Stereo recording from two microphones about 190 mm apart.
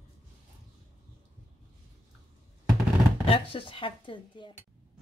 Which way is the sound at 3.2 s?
30° left (ahead or behind).